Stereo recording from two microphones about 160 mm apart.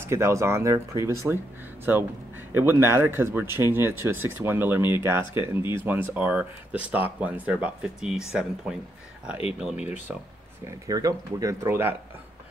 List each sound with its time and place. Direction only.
0.0 s speech: 15° right (ahead or behind)
10.9 s speech: 20° right (ahead or behind)